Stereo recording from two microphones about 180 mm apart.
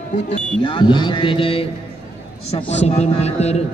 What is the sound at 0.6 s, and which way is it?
Speech, 25° left (ahead or behind).